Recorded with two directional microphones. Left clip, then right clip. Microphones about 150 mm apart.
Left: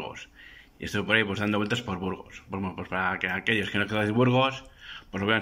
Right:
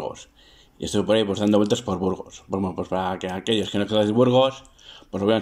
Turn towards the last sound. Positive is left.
turn(degrees=-25)  # may be behind; listen again after turning